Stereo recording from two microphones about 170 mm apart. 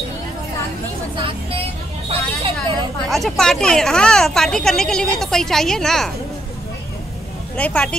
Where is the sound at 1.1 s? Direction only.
30° right (ahead or behind).